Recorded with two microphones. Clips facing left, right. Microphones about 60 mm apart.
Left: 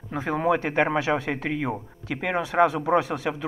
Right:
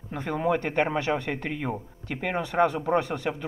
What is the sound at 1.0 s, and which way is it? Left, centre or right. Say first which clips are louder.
Speech: left 3 dB; left.